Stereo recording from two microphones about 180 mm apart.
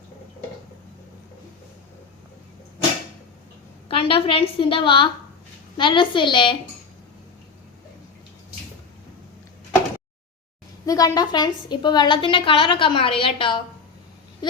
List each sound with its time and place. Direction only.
3.8 s a woman's voice: 30° left (ahead or behind)
10.8 s a woman's voice: 20° left (ahead or behind)